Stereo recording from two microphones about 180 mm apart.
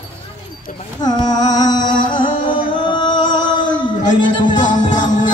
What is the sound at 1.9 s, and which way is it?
Music, 50° left (ahead or behind).